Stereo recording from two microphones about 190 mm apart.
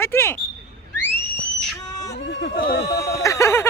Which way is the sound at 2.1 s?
75° left (ahead or behind).